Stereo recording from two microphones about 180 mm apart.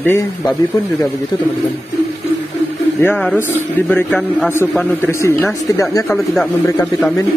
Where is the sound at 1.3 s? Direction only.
20° left (ahead or behind).